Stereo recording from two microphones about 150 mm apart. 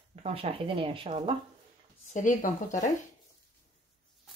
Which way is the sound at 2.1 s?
60° left (ahead or behind).